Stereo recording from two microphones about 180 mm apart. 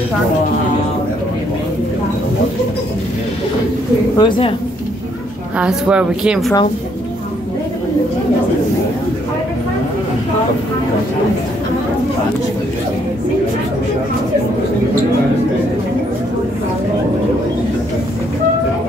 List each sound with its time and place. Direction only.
4.2 s speech: 30° left (ahead or behind)
5.6 s speech: 5° right (ahead or behind)